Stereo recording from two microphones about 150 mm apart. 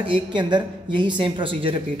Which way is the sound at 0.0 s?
35° right (ahead or behind).